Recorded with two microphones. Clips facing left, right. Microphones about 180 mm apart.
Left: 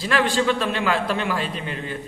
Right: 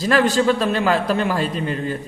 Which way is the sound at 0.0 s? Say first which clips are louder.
Right 4 dB; 40° right (ahead or behind).